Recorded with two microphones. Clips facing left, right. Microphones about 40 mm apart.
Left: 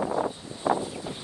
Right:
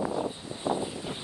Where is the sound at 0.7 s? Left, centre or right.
Left.